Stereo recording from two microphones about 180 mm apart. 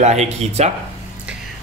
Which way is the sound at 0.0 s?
40° right (ahead or behind).